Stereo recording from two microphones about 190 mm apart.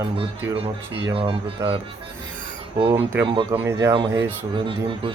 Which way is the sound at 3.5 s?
15° right (ahead or behind).